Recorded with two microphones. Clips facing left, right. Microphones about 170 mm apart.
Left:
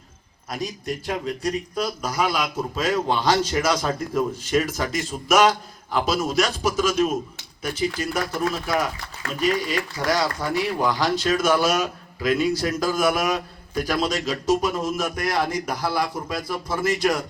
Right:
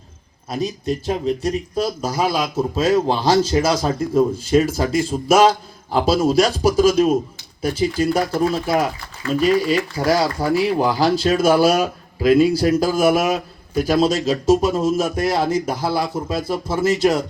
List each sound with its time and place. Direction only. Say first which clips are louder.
0.5 s a man's voice: right 6 dB; 25° right (ahead or behind)